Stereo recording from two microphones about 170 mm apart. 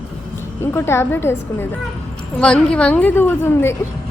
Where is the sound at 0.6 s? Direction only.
15° left (ahead or behind).